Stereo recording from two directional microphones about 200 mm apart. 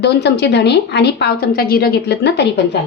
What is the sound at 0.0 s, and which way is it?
A woman's voice, 55° left (ahead or behind).